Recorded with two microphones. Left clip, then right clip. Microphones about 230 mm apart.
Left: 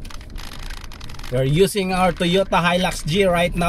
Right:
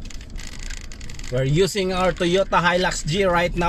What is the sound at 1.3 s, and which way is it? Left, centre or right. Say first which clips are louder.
Speech: left 3 dB; centre.